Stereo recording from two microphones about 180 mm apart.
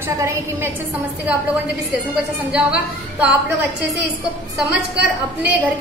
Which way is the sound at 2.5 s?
5° right (ahead or behind).